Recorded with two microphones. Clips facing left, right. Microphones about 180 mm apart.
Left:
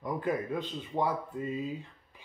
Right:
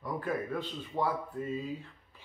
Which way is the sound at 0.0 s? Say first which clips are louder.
Left 2 dB; 20° left (ahead or behind).